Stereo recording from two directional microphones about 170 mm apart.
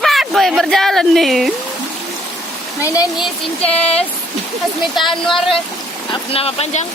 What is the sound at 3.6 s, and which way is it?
Speech, 35° left (ahead or behind).